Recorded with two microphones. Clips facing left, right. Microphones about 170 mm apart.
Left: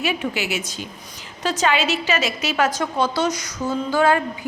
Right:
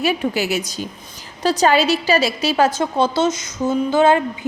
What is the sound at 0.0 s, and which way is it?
A woman's voice, 40° right (ahead or behind).